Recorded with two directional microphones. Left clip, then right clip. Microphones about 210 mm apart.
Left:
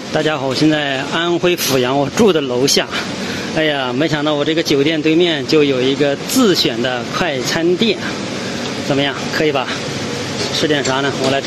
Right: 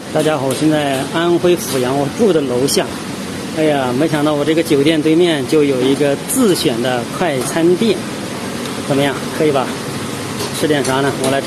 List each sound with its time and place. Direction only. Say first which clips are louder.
0.3 s speech: even; 5° left (ahead or behind)
3.7 s speech: right 2 dB; 5° left (ahead or behind)
9.0 s speech: right 2 dB; centre (ahead or behind)
10.7 s speech: right 1 dB; centre (ahead or behind)